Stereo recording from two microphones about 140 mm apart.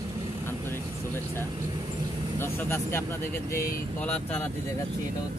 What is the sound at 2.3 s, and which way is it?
Speech, 15° left (ahead or behind).